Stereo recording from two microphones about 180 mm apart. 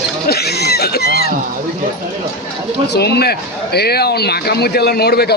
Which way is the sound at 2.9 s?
65° left (ahead or behind).